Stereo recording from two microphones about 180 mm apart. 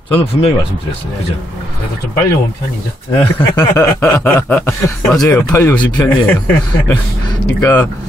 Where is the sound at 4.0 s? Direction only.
10° left (ahead or behind).